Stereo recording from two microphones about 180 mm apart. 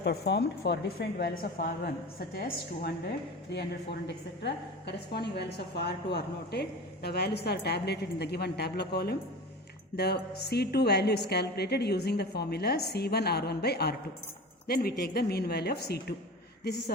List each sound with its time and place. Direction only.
0.0 s a woman's voice: 70° left (ahead or behind)
4.0 s a woman's voice: 70° left (ahead or behind)